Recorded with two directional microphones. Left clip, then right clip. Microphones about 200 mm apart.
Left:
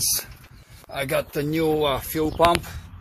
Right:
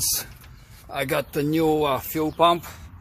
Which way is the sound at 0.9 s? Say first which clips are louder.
Even; 15° right (ahead or behind).